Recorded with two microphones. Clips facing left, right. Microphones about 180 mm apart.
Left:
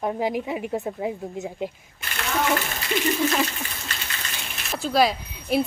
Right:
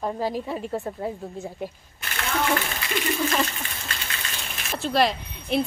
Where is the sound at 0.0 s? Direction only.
15° left (ahead or behind).